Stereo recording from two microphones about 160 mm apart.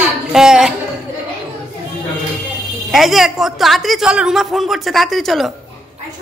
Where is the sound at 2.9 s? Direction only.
Centre (ahead or behind).